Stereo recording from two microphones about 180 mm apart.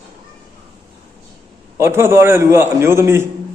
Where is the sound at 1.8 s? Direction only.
15° right (ahead or behind).